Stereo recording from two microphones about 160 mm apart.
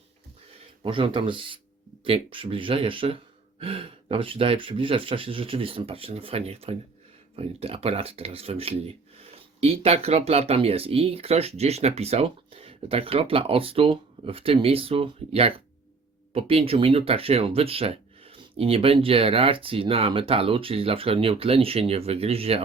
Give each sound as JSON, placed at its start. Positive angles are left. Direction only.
{"t": 0.8, "sound": "speech", "side_deg": -35}